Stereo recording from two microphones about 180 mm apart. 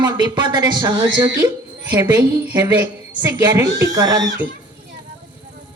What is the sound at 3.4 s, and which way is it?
Speech, 20° right (ahead or behind).